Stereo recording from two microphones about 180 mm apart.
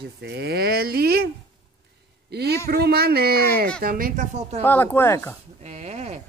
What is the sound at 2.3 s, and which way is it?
A man's voice, 65° right (ahead or behind).